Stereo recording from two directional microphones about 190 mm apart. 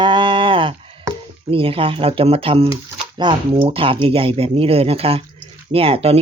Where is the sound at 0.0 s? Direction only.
25° right (ahead or behind).